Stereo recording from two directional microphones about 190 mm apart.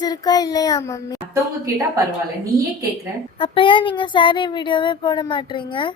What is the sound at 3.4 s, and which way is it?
Speech, 25° left (ahead or behind).